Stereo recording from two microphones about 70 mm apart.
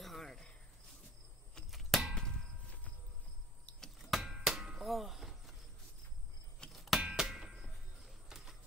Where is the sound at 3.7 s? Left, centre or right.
Centre.